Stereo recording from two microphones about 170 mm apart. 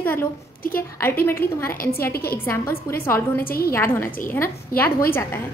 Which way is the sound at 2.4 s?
15° left (ahead or behind).